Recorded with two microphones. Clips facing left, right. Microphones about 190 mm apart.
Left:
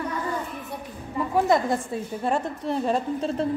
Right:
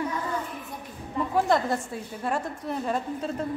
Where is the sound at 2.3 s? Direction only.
25° left (ahead or behind).